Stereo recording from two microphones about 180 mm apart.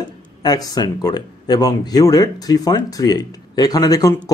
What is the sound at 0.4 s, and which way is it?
Speech, 20° left (ahead or behind).